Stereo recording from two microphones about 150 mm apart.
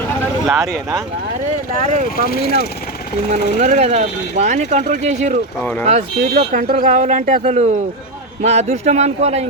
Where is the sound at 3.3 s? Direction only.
50° right (ahead or behind).